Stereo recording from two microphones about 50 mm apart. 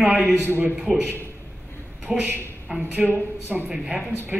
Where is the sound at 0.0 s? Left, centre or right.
Right.